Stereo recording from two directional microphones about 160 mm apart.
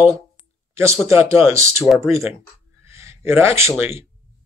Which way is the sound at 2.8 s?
15° right (ahead or behind).